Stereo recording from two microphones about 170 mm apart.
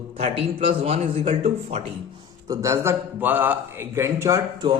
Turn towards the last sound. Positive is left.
turn(degrees=-20)  # may be behind; listen again after turning